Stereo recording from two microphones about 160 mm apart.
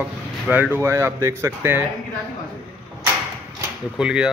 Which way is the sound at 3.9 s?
5° right (ahead or behind).